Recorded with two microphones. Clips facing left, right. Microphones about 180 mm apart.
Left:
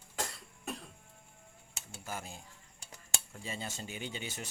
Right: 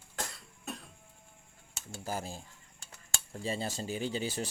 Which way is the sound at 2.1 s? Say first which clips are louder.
Right 5 dB; 35° right (ahead or behind).